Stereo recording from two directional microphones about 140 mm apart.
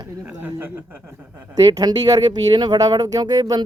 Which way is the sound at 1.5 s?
30° right (ahead or behind).